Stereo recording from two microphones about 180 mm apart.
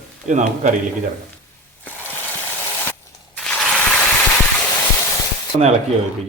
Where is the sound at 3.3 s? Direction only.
5° left (ahead or behind).